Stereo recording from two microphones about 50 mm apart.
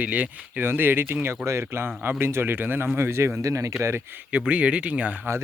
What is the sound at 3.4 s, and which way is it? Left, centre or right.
Speech, right.